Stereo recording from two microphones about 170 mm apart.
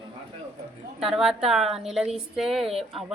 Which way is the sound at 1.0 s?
5° right (ahead or behind).